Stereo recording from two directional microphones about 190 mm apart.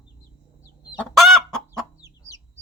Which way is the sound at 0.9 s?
Centre (ahead or behind).